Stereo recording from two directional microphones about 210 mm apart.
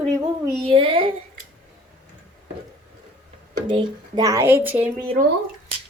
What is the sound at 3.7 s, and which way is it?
Speech, 20° right (ahead or behind).